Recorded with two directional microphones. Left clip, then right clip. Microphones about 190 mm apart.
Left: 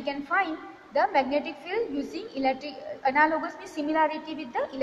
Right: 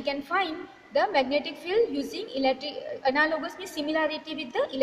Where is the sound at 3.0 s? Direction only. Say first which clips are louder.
Left 2 dB; 55° right (ahead or behind).